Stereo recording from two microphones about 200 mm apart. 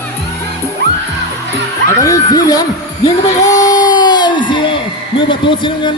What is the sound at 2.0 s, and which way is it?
Speech, 15° left (ahead or behind).